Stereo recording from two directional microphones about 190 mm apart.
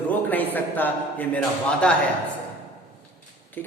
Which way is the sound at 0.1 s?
10° left (ahead or behind).